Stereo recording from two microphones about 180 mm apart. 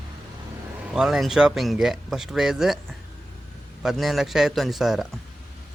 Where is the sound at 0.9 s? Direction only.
Centre (ahead or behind).